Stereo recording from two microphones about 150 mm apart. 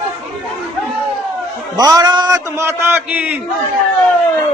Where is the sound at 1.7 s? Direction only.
25° right (ahead or behind).